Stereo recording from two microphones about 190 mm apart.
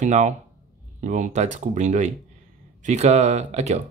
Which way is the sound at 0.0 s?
40° right (ahead or behind).